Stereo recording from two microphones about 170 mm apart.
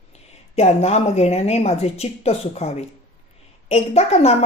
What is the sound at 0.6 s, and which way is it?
Speech, 40° left (ahead or behind).